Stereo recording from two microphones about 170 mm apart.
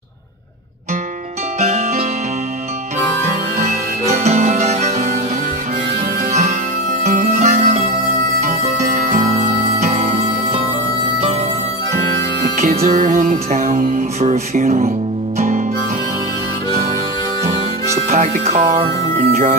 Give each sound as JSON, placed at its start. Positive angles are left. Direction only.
{"t": 1.6, "sound": "music", "side_deg": -45}
{"t": 3.6, "sound": "music", "side_deg": -40}
{"t": 6.3, "sound": "music", "side_deg": -45}
{"t": 9.7, "sound": "music", "side_deg": -40}
{"t": 12.5, "sound": "music", "side_deg": -45}
{"t": 18.3, "sound": "speech", "side_deg": -40}